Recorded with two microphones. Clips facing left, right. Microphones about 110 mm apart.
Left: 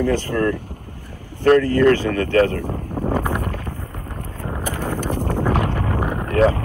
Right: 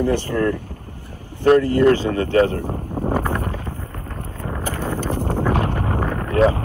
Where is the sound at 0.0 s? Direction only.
15° right (ahead or behind).